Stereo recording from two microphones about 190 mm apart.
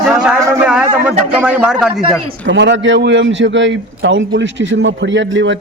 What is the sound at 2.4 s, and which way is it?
A man's voice, 65° right (ahead or behind).